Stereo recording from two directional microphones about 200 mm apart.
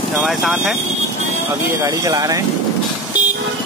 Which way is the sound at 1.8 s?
15° right (ahead or behind).